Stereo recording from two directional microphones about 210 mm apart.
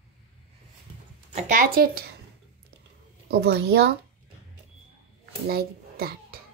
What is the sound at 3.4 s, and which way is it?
Speech, 50° right (ahead or behind).